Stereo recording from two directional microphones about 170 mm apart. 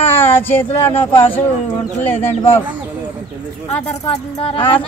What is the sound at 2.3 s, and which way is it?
Speech, 35° left (ahead or behind).